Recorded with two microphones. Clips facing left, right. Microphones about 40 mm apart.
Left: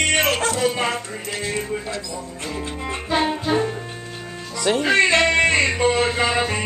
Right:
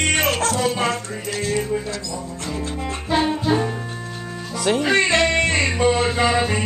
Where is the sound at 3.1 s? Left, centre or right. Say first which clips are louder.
Right 2 dB; centre.